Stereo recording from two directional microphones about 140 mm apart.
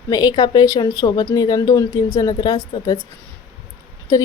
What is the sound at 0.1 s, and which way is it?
A woman's voice, 30° left (ahead or behind).